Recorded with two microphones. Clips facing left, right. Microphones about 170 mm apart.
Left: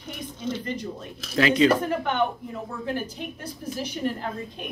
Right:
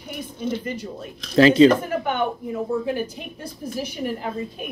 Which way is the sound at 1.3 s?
30° right (ahead or behind).